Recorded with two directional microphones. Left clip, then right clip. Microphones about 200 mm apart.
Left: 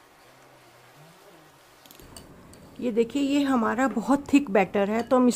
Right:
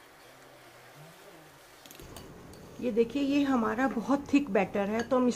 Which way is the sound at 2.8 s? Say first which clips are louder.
Left 3 dB; 55° left (ahead or behind).